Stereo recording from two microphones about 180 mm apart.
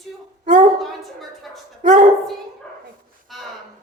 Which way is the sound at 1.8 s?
45° right (ahead or behind).